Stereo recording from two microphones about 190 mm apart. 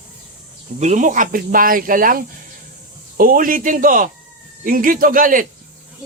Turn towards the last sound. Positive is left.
turn(degrees=-45)  # may be behind; listen again after turning